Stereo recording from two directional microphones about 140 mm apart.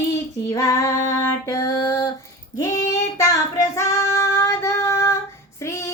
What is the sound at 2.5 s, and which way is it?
Child singing, 25° left (ahead or behind).